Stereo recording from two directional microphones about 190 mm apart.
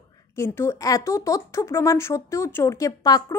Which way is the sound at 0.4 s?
15° left (ahead or behind).